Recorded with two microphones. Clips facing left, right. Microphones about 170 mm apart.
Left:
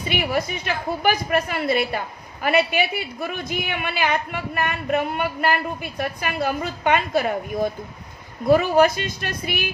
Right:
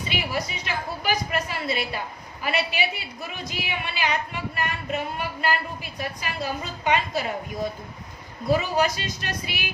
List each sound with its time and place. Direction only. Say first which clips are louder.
0.1 s a woman's voice: left 6 dB; 55° left (ahead or behind)